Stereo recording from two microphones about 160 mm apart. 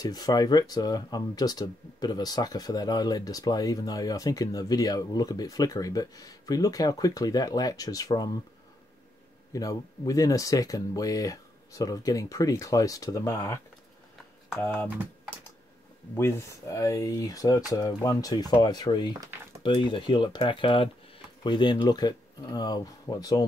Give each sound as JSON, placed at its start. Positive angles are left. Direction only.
{"t": 0.0, "sound": "speech", "side_deg": 25}
{"t": 9.5, "sound": "speech", "side_deg": 20}
{"t": 14.6, "sound": "speech", "side_deg": 15}
{"t": 16.2, "sound": "speech", "side_deg": 15}